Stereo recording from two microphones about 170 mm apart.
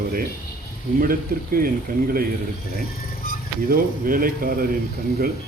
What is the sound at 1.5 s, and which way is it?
Speech, 60° right (ahead or behind).